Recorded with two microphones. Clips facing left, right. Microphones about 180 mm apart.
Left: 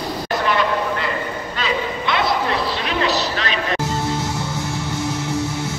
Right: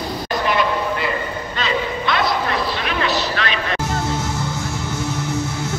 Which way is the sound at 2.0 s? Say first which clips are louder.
Left 2 dB; 25° left (ahead or behind).